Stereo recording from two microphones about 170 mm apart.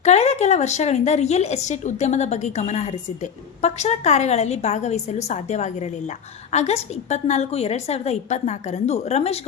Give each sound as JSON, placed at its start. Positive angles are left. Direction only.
{"t": 0.0, "sound": "a woman's voice", "side_deg": 40}